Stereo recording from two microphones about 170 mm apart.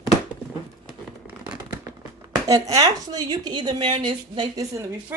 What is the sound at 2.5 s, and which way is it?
A woman's voice, 20° right (ahead or behind).